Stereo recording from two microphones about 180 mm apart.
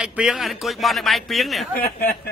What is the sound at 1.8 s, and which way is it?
Speech, 55° left (ahead or behind).